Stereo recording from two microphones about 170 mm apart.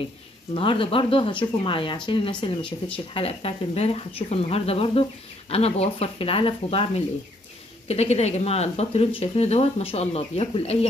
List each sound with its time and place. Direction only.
0.6 s speech: 30° left (ahead or behind)